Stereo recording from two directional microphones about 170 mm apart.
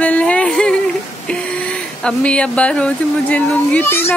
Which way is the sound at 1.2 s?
5° left (ahead or behind).